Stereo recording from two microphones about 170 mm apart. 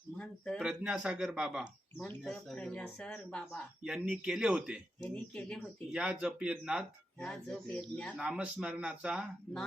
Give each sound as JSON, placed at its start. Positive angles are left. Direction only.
{"t": 0.2, "sound": "a man's voice", "side_deg": 5}
{"t": 0.6, "sound": "speech", "side_deg": -5}
{"t": 5.0, "sound": "speech", "side_deg": 5}
{"t": 5.9, "sound": "speech", "side_deg": -5}
{"t": 7.3, "sound": "speech", "side_deg": 5}
{"t": 8.2, "sound": "speech", "side_deg": -5}